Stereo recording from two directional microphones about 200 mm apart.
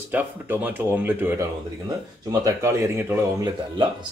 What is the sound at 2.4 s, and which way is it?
Speech, 15° right (ahead or behind).